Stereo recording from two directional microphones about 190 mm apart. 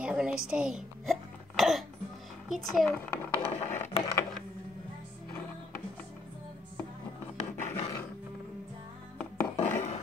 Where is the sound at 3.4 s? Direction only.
35° left (ahead or behind).